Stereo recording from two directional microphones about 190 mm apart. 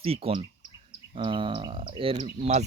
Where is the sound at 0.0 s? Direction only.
30° right (ahead or behind).